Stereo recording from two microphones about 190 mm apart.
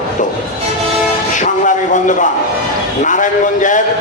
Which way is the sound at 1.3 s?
40° left (ahead or behind).